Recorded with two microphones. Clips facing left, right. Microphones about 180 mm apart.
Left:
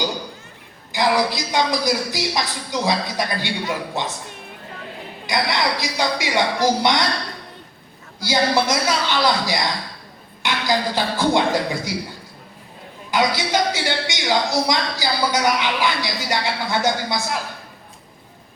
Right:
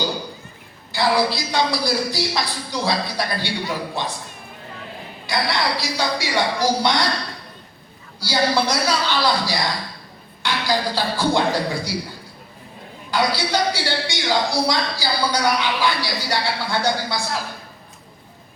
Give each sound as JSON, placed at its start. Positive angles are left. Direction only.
{"t": 0.9, "sound": "speech", "side_deg": 15}
{"t": 5.2, "sound": "speech", "side_deg": 20}
{"t": 8.2, "sound": "speech", "side_deg": 20}
{"t": 13.1, "sound": "speech", "side_deg": 20}